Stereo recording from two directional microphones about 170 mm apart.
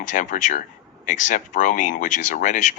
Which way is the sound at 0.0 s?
45° left (ahead or behind).